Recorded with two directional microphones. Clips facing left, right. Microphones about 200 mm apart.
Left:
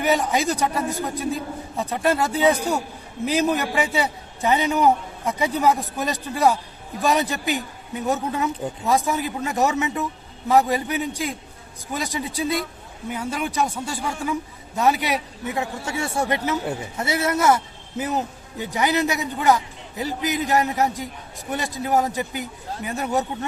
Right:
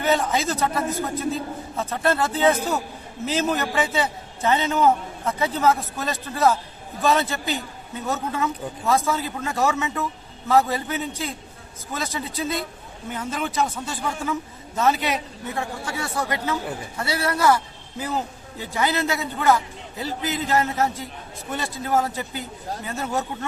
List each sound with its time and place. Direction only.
0.0 s a man's voice: 15° left (ahead or behind)